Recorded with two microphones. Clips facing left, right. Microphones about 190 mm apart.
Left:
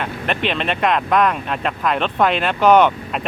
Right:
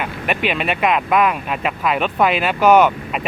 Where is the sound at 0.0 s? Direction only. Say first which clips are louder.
Right 1 dB; 5° right (ahead or behind).